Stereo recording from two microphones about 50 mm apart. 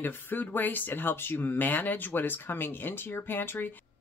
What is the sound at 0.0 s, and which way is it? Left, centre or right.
Speech, left.